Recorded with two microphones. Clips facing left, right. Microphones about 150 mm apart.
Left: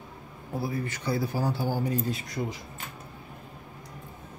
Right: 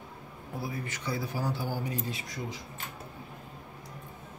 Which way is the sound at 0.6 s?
35° left (ahead or behind).